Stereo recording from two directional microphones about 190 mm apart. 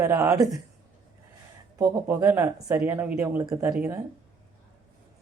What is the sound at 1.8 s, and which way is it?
Speech, 15° right (ahead or behind).